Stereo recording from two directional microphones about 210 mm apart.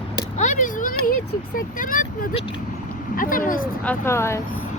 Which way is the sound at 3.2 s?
40° left (ahead or behind).